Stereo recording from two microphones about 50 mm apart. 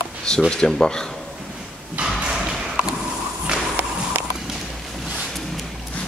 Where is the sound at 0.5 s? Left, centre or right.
Centre.